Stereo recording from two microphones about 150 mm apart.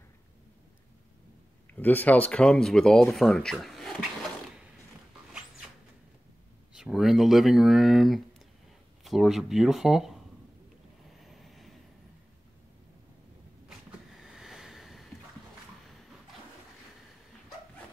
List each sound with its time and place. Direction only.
1.7 s speech: 10° left (ahead or behind)
6.7 s speech: 5° right (ahead or behind)
11.1 s vehicle: centre (ahead or behind)
14.1 s boat: centre (ahead or behind)